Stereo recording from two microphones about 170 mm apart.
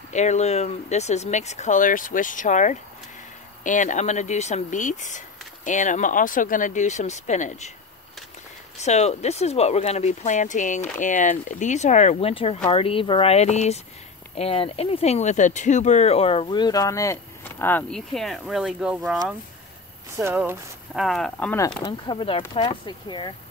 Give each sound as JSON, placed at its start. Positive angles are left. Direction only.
{"t": 0.1, "sound": "speech", "side_deg": 45}
{"t": 8.7, "sound": "speech", "side_deg": 40}
{"t": 20.2, "sound": "speech", "side_deg": -15}
{"t": 20.9, "sound": "speech", "side_deg": 0}
{"t": 21.8, "sound": "speech", "side_deg": 30}